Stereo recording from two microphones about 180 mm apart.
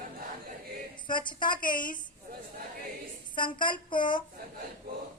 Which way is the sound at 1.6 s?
50° left (ahead or behind).